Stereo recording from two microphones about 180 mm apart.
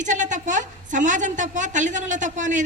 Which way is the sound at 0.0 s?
45° right (ahead or behind).